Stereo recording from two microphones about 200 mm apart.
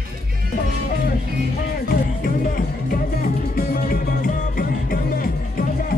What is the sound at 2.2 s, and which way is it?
Music, 45° left (ahead or behind).